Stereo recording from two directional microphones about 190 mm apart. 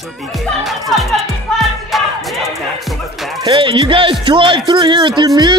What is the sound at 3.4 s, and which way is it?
Speech, 25° right (ahead or behind).